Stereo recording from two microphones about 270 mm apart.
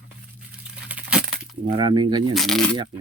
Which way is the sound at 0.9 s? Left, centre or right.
Centre.